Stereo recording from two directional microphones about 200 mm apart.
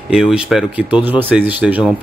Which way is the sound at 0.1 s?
5° right (ahead or behind).